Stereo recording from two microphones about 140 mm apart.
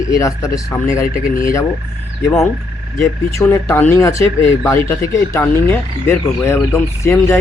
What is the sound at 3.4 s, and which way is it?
Speech, 15° left (ahead or behind).